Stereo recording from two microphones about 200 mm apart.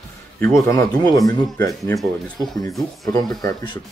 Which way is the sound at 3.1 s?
20° left (ahead or behind).